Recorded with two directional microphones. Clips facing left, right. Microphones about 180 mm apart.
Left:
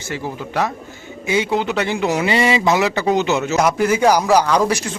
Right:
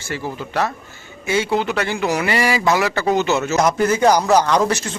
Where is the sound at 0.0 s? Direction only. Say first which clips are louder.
Even; 15° left (ahead or behind).